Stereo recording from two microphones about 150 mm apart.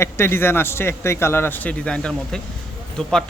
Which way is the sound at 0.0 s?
15° left (ahead or behind).